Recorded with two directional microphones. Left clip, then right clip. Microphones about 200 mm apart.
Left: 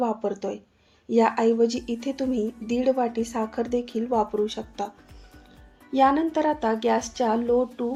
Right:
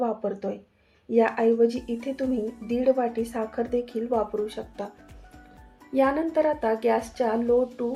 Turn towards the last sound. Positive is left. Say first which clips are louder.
# even
turn(degrees=30)  # may be behind; listen again after turning